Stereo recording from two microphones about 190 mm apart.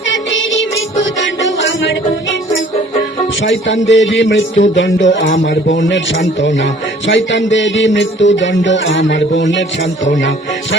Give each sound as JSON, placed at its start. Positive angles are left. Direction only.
{"t": 0.0, "sound": "music", "side_deg": 80}
{"t": 3.4, "sound": "music", "side_deg": 80}